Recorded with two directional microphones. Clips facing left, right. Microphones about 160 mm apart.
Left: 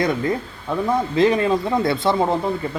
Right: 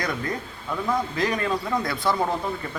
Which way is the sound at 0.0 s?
25° left (ahead or behind).